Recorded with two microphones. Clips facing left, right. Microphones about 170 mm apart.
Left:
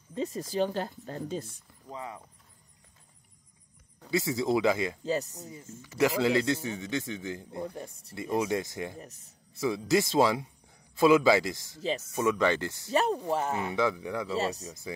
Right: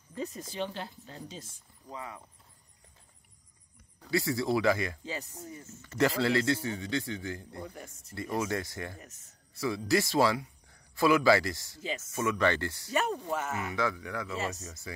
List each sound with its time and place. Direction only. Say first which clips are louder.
0.1 s speech: left 6 dB; 30° left (ahead or behind); by 1.6 s 55° left (ahead or behind)
1.9 s a man's voice: left 2 dB; 30° left (ahead or behind)
4.1 s a man's voice: left 2 dB; 20° left (ahead or behind)
5.0 s speech: left 8 dB; 40° left (ahead or behind)
5.8 s a man's voice: left 2 dB; 10° left (ahead or behind)
9.0 s speech: left 5 dB; 35° left (ahead or behind)
9.6 s a man's voice: left 2 dB; 20° left (ahead or behind)
11.8 s speech: left 6 dB; 35° left (ahead or behind)
12.2 s speech: left 2 dB; 15° left (ahead or behind)
12.9 s speech: left 4 dB; 30° left (ahead or behind)